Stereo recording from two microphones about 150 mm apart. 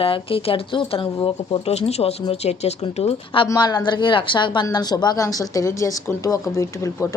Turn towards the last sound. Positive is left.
turn(degrees=20)  # may be behind; listen again after turning